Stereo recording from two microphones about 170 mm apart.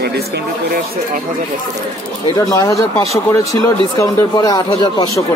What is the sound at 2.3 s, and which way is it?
Speech, 20° left (ahead or behind).